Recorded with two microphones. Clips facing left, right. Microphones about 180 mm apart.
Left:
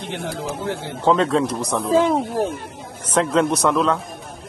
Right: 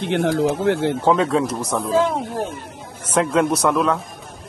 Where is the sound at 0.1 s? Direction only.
70° right (ahead or behind).